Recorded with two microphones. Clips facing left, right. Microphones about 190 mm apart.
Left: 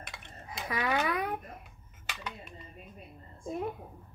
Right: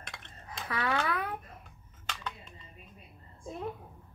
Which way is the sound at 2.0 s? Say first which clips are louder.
Even; 10° left (ahead or behind).